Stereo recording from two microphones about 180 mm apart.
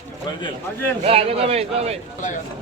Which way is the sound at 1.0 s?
30° right (ahead or behind).